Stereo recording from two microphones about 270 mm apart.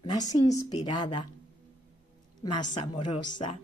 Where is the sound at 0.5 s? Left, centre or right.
Centre.